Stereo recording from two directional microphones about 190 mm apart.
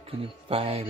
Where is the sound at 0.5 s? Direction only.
30° right (ahead or behind).